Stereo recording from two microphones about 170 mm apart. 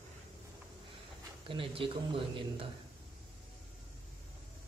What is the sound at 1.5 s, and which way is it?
Speech, 30° right (ahead or behind).